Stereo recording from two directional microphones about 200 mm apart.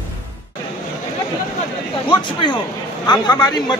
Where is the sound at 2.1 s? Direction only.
25° left (ahead or behind).